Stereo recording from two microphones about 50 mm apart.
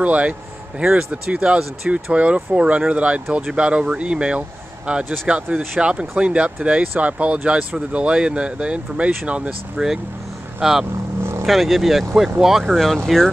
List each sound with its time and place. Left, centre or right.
0.0 s speech: right
9.8 s speech: centre